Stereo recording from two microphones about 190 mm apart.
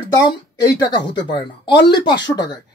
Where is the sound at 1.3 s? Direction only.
25° left (ahead or behind).